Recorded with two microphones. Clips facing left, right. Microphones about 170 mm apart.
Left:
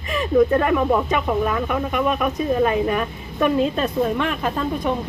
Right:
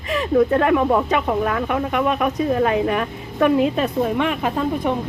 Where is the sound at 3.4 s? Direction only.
15° right (ahead or behind).